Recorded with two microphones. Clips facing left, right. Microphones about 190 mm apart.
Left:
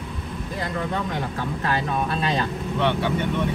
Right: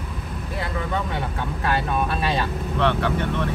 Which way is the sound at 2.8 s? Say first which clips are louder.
Right 1 dB; 25° left (ahead or behind).